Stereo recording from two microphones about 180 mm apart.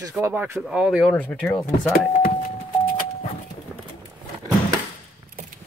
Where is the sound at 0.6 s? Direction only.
5° right (ahead or behind).